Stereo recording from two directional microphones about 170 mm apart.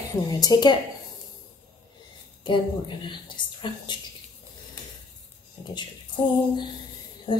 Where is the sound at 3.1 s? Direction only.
25° left (ahead or behind).